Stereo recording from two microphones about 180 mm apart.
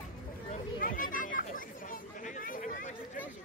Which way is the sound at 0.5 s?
50° left (ahead or behind).